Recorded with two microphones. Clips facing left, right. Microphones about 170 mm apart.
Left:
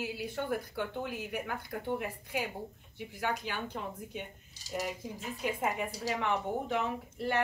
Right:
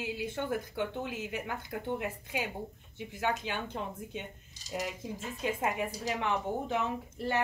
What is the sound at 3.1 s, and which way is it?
Speech, 20° right (ahead or behind).